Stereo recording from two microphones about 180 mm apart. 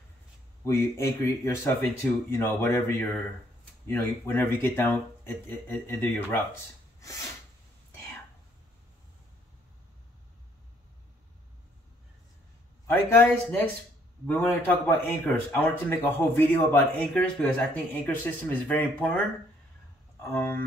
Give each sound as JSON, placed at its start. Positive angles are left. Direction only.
{"t": 0.7, "sound": "speech", "side_deg": 15}
{"t": 12.8, "sound": "speech", "side_deg": 15}
{"t": 20.3, "sound": "speech", "side_deg": 10}